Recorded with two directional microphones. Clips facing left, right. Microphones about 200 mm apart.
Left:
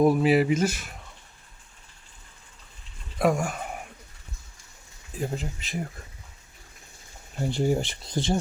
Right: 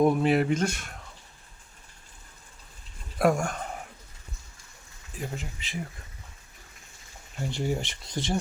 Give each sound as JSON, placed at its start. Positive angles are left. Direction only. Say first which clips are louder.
{"t": 0.0, "sound": "speech", "louder": "left 2 dB", "side_deg": 5}
{"t": 3.2, "sound": "speech", "louder": "even", "side_deg": 0}
{"t": 5.4, "sound": "speech", "louder": "left 4 dB", "side_deg": 40}
{"t": 7.4, "sound": "speech", "louder": "left 5 dB", "side_deg": 35}